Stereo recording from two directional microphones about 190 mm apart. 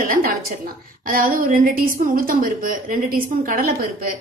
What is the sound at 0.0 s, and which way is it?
A woman's voice, 45° right (ahead or behind).